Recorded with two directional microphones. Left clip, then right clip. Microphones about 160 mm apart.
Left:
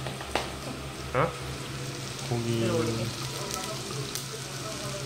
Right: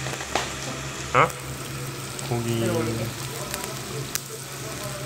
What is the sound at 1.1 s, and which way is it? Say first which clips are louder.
Speech: right 8 dB; 5° right (ahead or behind).